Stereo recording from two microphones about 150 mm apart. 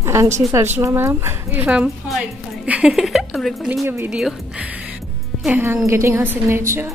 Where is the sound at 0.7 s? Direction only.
15° right (ahead or behind); by 3.8 s centre (ahead or behind).